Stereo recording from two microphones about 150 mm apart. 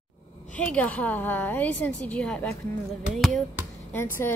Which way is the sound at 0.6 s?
10° left (ahead or behind).